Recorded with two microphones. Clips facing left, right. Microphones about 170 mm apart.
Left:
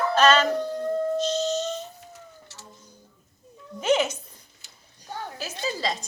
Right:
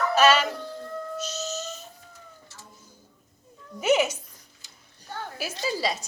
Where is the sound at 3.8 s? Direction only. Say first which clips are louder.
Even; 10° right (ahead or behind).